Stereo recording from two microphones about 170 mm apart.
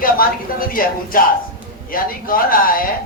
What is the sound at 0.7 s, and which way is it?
A man's voice, 55° left (ahead or behind).